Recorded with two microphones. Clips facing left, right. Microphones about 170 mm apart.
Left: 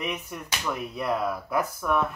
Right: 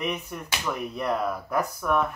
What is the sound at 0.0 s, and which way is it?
Speech, centre (ahead or behind).